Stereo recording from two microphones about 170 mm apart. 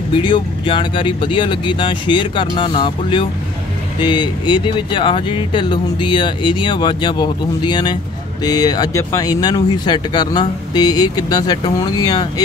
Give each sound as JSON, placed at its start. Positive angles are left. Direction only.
{"t": 0.1, "sound": "speech", "side_deg": 30}